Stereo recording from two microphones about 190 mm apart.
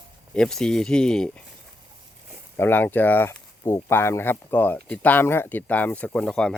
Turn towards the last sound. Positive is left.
turn(degrees=5)  # may be behind; listen again after turning